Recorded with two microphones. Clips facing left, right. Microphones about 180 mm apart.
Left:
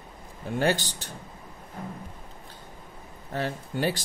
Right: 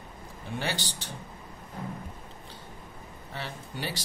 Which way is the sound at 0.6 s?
45° left (ahead or behind).